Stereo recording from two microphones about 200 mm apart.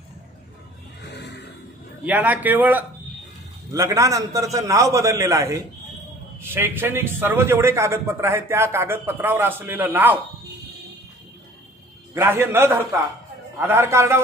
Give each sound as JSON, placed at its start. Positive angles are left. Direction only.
{"t": 1.1, "sound": "music", "side_deg": 60}
{"t": 2.0, "sound": "a man's voice", "side_deg": -10}
{"t": 12.1, "sound": "a man's voice", "side_deg": -10}